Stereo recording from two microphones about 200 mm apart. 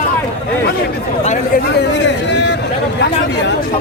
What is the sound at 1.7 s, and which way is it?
Speech, 60° left (ahead or behind).